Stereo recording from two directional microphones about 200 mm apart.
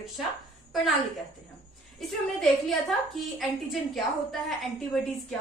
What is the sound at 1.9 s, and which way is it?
A woman's voice, centre (ahead or behind).